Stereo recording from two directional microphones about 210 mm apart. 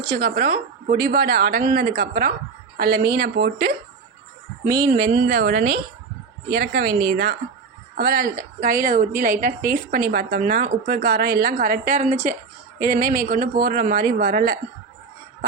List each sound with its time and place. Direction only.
0.2 s a woman's voice: 45° right (ahead or behind)
4.9 s a woman's voice: 45° right (ahead or behind)